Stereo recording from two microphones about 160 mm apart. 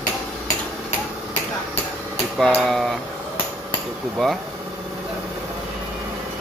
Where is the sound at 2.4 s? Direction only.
Centre (ahead or behind).